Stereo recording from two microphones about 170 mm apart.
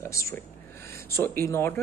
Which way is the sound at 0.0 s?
15° left (ahead or behind).